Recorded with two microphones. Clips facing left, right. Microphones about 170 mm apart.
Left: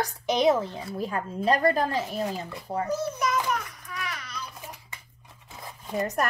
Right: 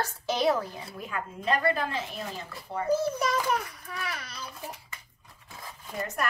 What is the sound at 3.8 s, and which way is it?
Baby cry, 35° right (ahead or behind).